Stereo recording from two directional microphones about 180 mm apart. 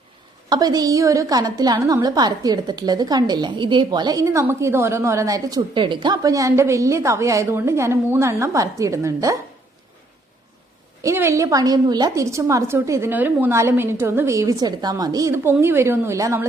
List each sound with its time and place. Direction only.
0.5 s a woman's voice: 20° right (ahead or behind)
11.0 s a woman's voice: 15° right (ahead or behind)